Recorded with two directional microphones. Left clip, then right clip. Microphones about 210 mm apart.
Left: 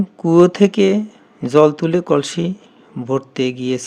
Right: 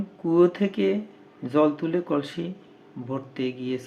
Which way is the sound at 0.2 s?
50° left (ahead or behind).